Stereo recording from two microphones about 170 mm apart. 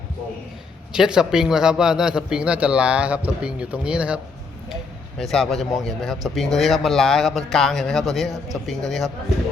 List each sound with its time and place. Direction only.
0.9 s speech: 5° right (ahead or behind)